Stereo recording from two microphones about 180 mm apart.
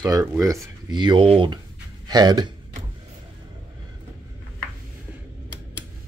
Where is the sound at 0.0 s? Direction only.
20° right (ahead or behind).